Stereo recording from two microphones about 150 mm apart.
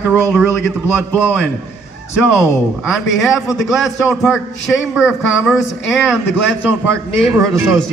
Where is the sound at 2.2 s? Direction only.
5° right (ahead or behind).